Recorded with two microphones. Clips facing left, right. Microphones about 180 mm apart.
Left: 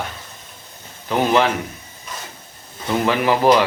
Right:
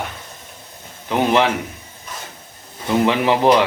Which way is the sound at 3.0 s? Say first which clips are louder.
Right 1 dB; 25° right (ahead or behind).